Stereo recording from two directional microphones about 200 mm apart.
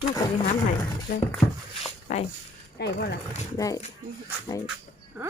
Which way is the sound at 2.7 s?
55° left (ahead or behind).